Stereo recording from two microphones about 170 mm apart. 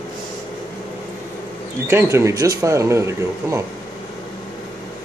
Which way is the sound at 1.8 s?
15° right (ahead or behind).